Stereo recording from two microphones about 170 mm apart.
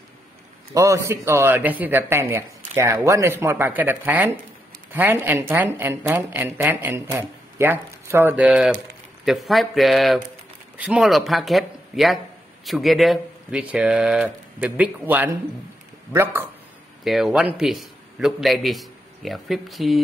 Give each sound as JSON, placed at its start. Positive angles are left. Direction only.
{"t": 0.7, "sound": "speech", "side_deg": -20}
{"t": 17.0, "sound": "a man's voice", "side_deg": 0}